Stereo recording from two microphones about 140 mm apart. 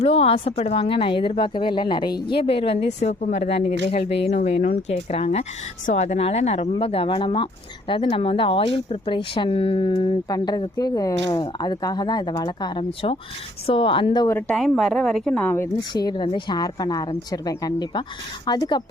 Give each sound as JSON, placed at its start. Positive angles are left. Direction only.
{"t": 0.0, "sound": "speech", "side_deg": 45}
{"t": 4.9, "sound": "speech", "side_deg": 50}
{"t": 14.4, "sound": "a woman's voice", "side_deg": 5}
{"t": 15.9, "sound": "a woman's voice", "side_deg": 30}